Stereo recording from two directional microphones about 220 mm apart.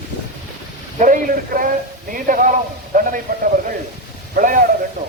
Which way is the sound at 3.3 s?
40° right (ahead or behind).